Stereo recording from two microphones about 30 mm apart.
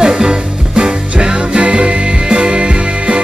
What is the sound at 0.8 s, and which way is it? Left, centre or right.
Music, right.